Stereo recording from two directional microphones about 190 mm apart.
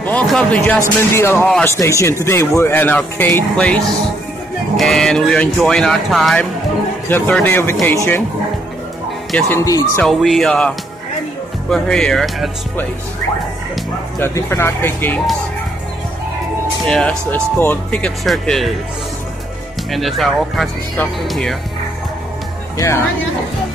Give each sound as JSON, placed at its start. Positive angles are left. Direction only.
{"t": 0.0, "sound": "speech", "side_deg": 5}
{"t": 9.3, "sound": "speech", "side_deg": 0}
{"t": 9.6, "sound": "speech", "side_deg": 15}
{"t": 10.0, "sound": "speech", "side_deg": 0}
{"t": 11.7, "sound": "speech", "side_deg": 5}
{"t": 14.2, "sound": "speech", "side_deg": 15}
{"t": 16.8, "sound": "speech", "side_deg": 5}
{"t": 19.9, "sound": "speech", "side_deg": 0}